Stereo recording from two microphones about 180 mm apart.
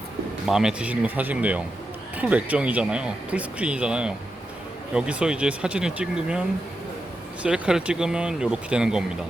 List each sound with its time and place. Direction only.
0.4 s speech: 5° right (ahead or behind)
7.4 s speech: 5° right (ahead or behind)